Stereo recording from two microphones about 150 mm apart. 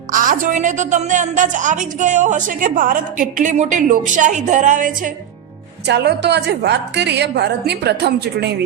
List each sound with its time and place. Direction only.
0.1 s a woman's voice: 65° right (ahead or behind)
5.8 s a woman's voice: 90° right